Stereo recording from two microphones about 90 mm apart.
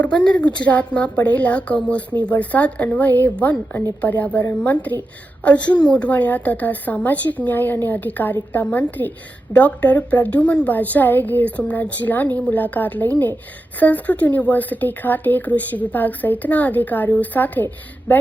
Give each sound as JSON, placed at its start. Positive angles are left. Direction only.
{"t": 0.0, "sound": "a woman's voice", "side_deg": 10}